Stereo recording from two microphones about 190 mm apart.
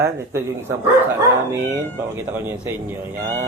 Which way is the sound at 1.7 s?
10° right (ahead or behind).